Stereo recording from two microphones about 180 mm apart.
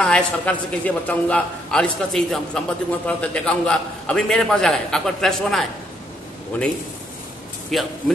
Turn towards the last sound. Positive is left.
turn(degrees=0)  # may be behind; listen again after turning